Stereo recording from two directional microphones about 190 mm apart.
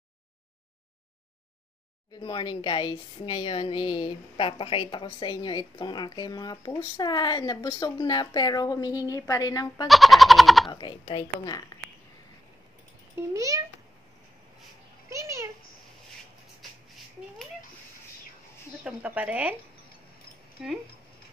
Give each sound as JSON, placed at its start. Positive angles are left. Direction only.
{"t": 2.1, "sound": "a woman's voice", "side_deg": 25}
{"t": 9.8, "sound": "speech", "side_deg": 0}
{"t": 10.7, "sound": "a woman's voice", "side_deg": 25}
{"t": 13.3, "sound": "speech", "side_deg": -15}
{"t": 15.0, "sound": "a child's voice", "side_deg": -15}
{"t": 18.9, "sound": "speech", "side_deg": -5}
{"t": 20.6, "sound": "speech", "side_deg": -5}